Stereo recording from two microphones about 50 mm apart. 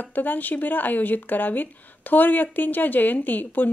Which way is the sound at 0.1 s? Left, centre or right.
Left.